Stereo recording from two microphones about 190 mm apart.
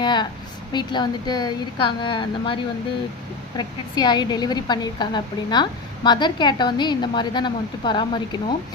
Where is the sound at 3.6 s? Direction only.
20° left (ahead or behind).